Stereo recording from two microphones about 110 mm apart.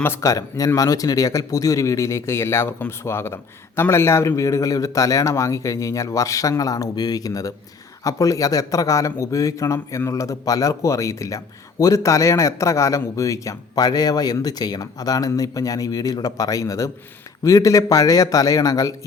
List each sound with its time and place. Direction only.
0.0 s speech: 25° left (ahead or behind)